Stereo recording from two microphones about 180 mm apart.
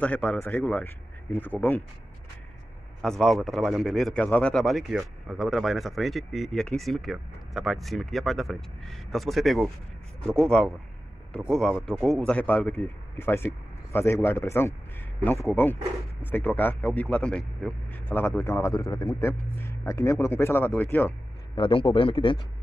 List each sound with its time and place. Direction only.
0.0 s speech: 5° left (ahead or behind)
3.0 s a man's voice: 5° left (ahead or behind)
21.5 s speech: 30° left (ahead or behind)